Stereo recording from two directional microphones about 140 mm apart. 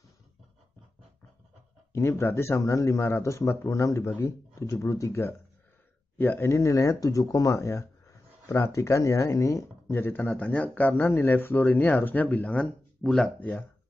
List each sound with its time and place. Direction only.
1.9 s speech: 20° left (ahead or behind)